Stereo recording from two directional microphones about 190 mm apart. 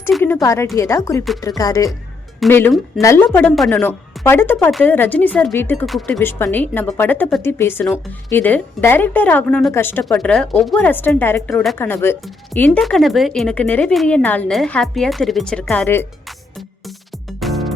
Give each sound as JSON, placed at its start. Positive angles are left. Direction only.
{"t": 0.1, "sound": "speech", "side_deg": 0}
{"t": 0.4, "sound": "a woman's voice", "side_deg": 15}
{"t": 1.4, "sound": "music", "side_deg": 20}
{"t": 2.5, "sound": "a woman's voice", "side_deg": 10}
{"t": 5.8, "sound": "speech", "side_deg": 0}
{"t": 6.1, "sound": "a woman's voice", "side_deg": 10}
{"t": 17.4, "sound": "music", "side_deg": 0}